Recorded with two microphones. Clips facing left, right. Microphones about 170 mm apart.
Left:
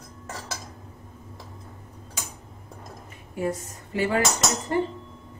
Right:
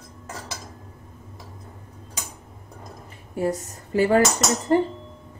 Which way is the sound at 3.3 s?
40° right (ahead or behind).